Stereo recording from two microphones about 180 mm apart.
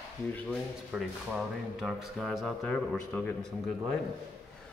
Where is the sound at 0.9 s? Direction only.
5° right (ahead or behind).